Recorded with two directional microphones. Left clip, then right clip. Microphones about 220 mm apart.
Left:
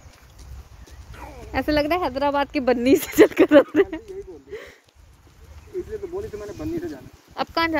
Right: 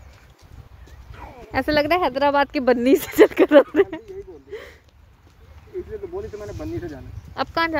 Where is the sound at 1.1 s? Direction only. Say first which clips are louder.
Right 2 dB; 5° right (ahead or behind).